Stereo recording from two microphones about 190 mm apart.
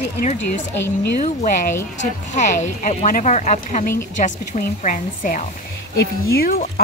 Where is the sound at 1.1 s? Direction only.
40° left (ahead or behind).